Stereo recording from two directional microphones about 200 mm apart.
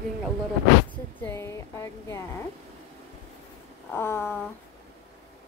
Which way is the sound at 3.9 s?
10° left (ahead or behind).